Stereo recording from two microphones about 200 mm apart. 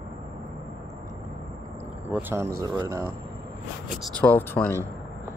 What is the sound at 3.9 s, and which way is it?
Speech, 5° left (ahead or behind).